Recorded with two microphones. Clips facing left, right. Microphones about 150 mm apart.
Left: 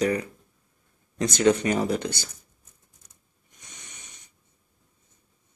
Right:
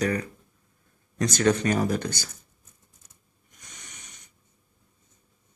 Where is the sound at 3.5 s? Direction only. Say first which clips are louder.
Even; 25° left (ahead or behind).